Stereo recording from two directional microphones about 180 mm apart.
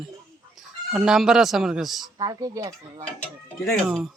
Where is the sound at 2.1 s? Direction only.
20° right (ahead or behind).